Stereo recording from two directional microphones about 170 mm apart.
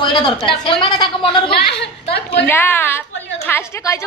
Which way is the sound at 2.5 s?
10° left (ahead or behind).